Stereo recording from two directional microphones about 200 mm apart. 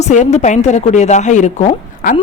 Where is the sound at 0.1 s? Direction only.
35° left (ahead or behind).